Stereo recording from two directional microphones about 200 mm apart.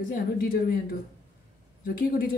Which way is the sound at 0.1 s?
45° left (ahead or behind).